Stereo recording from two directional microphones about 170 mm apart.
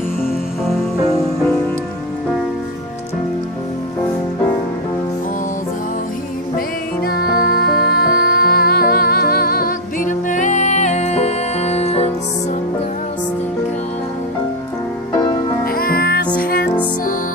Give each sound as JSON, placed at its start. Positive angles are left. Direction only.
{"t": 7.0, "sound": "music", "side_deg": 65}
{"t": 15.6, "sound": "music", "side_deg": 60}